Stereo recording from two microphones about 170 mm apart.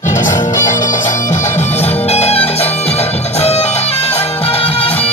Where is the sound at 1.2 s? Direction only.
40° left (ahead or behind).